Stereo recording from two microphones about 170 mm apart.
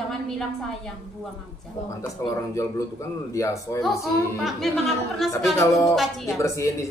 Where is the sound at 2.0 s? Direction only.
20° left (ahead or behind).